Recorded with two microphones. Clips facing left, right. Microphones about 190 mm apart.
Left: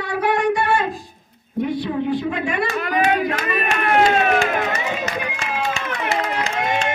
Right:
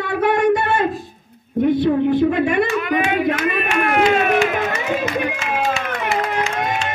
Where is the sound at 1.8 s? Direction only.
55° right (ahead or behind).